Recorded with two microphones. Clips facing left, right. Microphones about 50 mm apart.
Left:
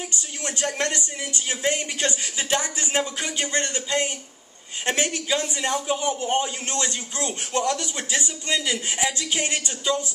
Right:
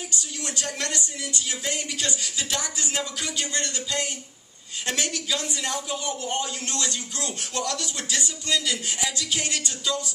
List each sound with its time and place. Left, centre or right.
0.1 s a man's voice: left